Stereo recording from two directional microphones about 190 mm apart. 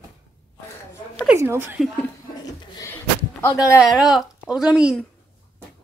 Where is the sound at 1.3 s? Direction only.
15° right (ahead or behind).